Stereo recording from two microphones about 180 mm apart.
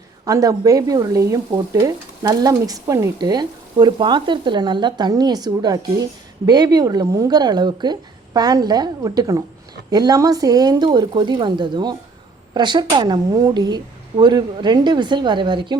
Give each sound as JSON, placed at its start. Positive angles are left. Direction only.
{"t": 0.3, "sound": "speech", "side_deg": -20}